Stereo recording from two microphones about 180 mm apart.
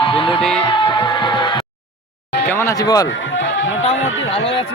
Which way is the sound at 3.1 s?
90° left.